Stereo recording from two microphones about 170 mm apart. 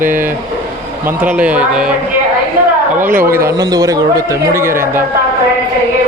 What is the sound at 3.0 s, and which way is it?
Speech, 10° right (ahead or behind).